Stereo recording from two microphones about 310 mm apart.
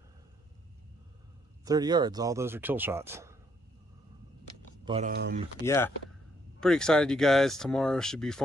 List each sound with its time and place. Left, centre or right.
1.6 s speech: centre
4.8 s speech: centre
5.1 s speech: right
5.6 s speech: centre